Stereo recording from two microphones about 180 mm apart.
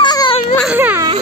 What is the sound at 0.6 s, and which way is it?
Speech, 10° right (ahead or behind).